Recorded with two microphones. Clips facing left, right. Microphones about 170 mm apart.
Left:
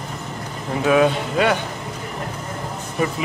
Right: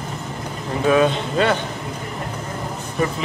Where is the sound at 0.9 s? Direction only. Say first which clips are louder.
Even; 10° left (ahead or behind).